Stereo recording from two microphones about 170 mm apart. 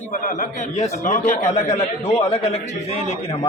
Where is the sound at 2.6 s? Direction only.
40° left (ahead or behind).